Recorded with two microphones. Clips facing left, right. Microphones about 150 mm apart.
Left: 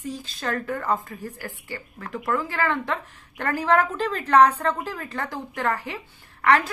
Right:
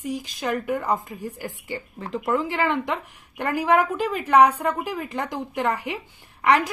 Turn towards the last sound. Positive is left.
turn(degrees=-15)  # may be behind; listen again after turning